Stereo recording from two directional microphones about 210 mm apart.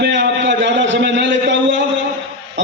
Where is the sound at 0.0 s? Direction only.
60° right (ahead or behind).